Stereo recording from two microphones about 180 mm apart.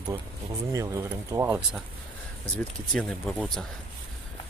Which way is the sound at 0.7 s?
15° right (ahead or behind).